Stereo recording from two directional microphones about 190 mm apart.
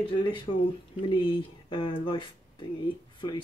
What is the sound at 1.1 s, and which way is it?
Speech, 25° left (ahead or behind).